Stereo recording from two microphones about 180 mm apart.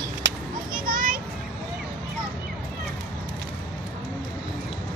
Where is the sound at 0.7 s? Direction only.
50° right (ahead or behind).